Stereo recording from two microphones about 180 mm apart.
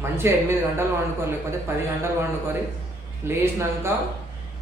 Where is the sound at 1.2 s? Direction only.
15° right (ahead or behind).